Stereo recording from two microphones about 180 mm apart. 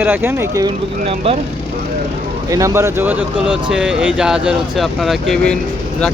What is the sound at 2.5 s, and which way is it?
Speech, 20° right (ahead or behind).